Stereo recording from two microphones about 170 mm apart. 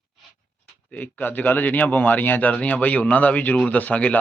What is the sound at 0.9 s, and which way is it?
A man's voice, 10° left (ahead or behind).